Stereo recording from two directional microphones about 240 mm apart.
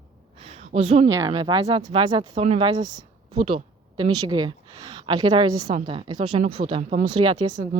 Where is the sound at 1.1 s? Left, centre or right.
Centre.